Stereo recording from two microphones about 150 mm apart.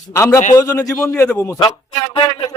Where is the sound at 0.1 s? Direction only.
20° left (ahead or behind).